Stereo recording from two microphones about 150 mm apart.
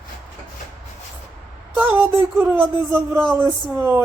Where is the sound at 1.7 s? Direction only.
15° right (ahead or behind).